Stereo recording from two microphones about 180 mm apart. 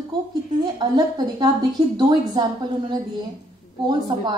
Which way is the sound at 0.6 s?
25° right (ahead or behind).